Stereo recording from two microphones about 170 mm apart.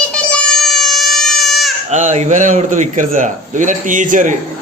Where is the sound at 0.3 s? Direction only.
5° left (ahead or behind).